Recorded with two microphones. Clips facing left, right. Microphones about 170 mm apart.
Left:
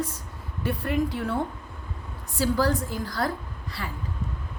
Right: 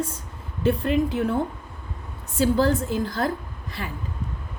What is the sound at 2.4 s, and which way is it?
A woman's voice, 20° right (ahead or behind).